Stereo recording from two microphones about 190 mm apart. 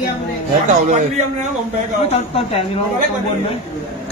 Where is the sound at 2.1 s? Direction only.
30° left (ahead or behind).